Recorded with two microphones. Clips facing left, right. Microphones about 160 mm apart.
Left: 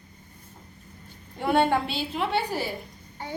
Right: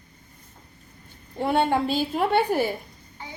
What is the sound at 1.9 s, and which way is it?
Speech, 45° right (ahead or behind).